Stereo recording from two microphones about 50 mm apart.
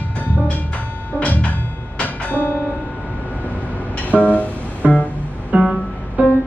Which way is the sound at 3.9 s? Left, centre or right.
Left.